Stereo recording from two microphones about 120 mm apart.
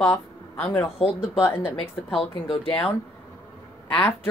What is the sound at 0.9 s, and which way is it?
Speech, 60° left (ahead or behind).